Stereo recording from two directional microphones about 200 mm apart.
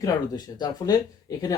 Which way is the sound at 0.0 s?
20° left (ahead or behind).